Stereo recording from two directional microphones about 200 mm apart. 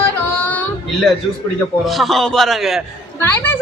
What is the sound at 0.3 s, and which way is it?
Music, 10° left (ahead or behind).